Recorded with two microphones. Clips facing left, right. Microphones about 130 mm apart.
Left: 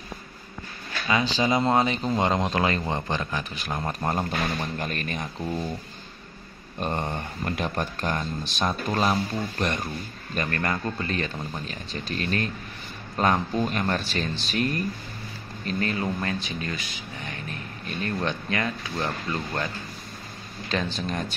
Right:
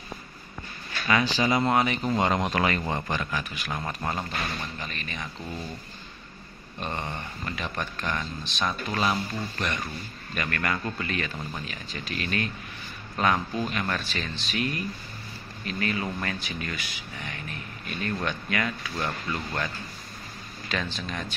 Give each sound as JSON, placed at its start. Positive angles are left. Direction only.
{"t": 1.0, "sound": "speech", "side_deg": 20}
{"t": 4.1, "sound": "speech", "side_deg": 50}
{"t": 6.8, "sound": "speech", "side_deg": 40}